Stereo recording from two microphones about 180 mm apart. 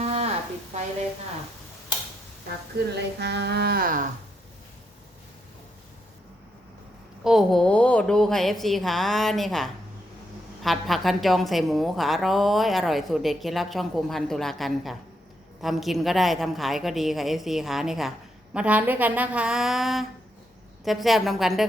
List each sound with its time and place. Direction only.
0.0 s sizzle: 35° right (ahead or behind)
2.9 s speech: 70° right (ahead or behind); by 4.0 s 50° right (ahead or behind)
7.3 s a woman's voice: centre (ahead or behind)